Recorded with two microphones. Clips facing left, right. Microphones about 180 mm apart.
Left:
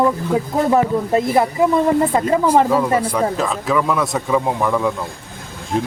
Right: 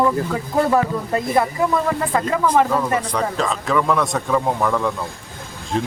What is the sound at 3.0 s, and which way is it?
A man's voice, 5° left (ahead or behind).